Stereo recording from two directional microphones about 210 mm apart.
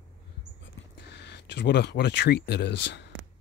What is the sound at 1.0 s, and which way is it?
Speech, 55° left (ahead or behind).